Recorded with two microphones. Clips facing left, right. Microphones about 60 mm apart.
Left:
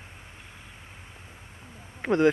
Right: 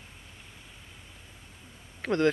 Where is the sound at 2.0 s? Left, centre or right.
Centre.